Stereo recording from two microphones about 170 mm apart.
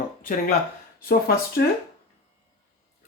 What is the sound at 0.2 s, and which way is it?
Speech, 55° left (ahead or behind).